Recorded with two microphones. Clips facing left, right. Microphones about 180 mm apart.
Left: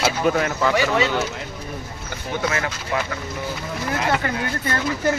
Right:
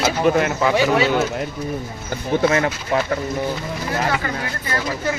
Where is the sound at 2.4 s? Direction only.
30° right (ahead or behind).